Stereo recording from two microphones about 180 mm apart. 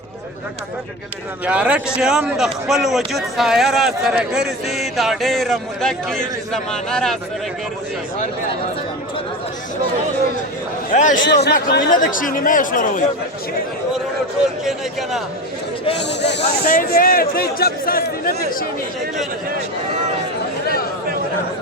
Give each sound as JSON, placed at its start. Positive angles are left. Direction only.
{"t": 1.5, "sound": "a man's voice", "side_deg": -5}
{"t": 10.9, "sound": "speech", "side_deg": 45}
{"t": 11.4, "sound": "speech", "side_deg": 70}
{"t": 11.9, "sound": "speech", "side_deg": 50}
{"t": 14.6, "sound": "a man's voice", "side_deg": 0}
{"t": 16.0, "sound": "speech", "side_deg": 70}
{"t": 16.4, "sound": "speech", "side_deg": 50}